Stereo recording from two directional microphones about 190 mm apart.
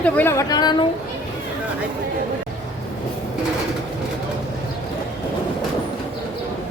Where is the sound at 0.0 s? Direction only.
10° left (ahead or behind).